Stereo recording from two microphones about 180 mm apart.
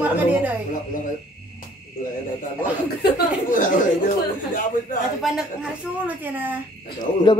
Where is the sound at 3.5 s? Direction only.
45° left (ahead or behind).